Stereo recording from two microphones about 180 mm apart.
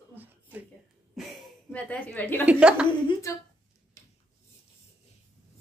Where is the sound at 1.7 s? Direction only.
10° left (ahead or behind).